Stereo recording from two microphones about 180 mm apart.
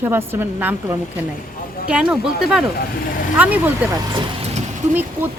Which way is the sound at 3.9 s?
25° right (ahead or behind).